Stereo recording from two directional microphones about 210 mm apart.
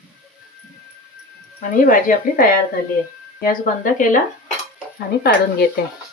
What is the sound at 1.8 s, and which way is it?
Speech, 40° left (ahead or behind).